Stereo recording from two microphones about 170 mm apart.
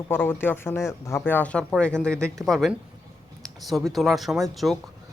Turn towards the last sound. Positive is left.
turn(degrees=0)  # may be behind; listen again after turning